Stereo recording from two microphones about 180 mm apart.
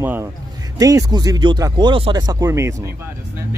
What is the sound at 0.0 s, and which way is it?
Speech, 10° right (ahead or behind).